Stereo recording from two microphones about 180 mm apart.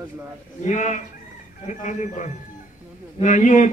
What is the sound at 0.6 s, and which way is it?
Speech, 45° left (ahead or behind).